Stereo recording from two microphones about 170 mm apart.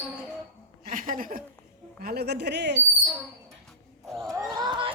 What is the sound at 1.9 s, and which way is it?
Speech, 65° right (ahead or behind).